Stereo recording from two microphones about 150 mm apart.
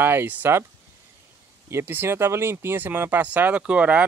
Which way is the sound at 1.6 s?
15° right (ahead or behind).